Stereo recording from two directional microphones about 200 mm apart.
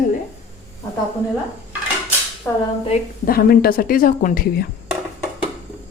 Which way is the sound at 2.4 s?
5° left (ahead or behind).